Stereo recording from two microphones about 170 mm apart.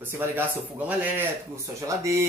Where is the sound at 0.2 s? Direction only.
10° right (ahead or behind).